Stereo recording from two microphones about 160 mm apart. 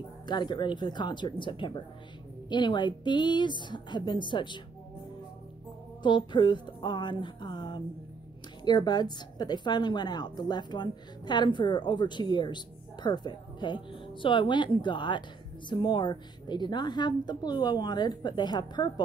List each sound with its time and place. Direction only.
0.3 s a woman's voice: 30° left (ahead or behind)
6.0 s a woman's voice: 30° left (ahead or behind)